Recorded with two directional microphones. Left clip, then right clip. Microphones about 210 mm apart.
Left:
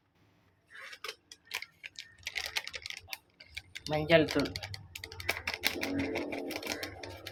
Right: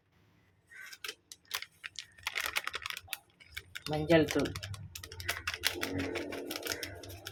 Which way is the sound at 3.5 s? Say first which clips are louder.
Left 2 dB; 15° right (ahead or behind).